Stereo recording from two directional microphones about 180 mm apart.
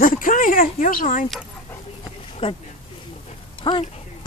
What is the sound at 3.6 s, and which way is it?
Speech, 25° left (ahead or behind).